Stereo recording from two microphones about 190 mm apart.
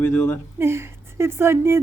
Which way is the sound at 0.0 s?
10° left (ahead or behind).